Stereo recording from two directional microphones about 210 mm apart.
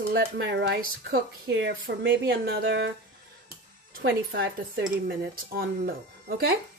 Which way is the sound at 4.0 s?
55° right (ahead or behind).